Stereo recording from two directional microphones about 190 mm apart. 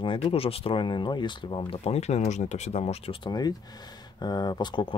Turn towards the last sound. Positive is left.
turn(degrees=25)  # may be behind; listen again after turning